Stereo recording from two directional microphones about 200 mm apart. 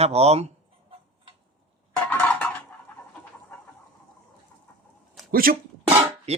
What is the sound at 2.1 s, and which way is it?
Dishes, 10° left (ahead or behind).